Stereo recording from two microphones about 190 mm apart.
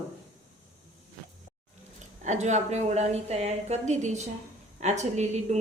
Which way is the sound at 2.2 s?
40° right (ahead or behind).